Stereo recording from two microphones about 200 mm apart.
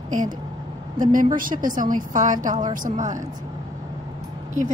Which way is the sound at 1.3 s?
40° right (ahead or behind).